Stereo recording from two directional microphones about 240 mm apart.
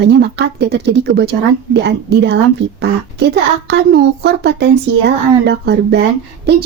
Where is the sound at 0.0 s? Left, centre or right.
Right.